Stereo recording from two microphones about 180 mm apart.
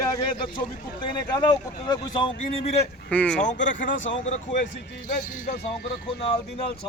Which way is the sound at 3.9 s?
90° left.